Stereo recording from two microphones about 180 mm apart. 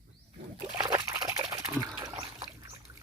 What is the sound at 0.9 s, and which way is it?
Water, 20° right (ahead or behind).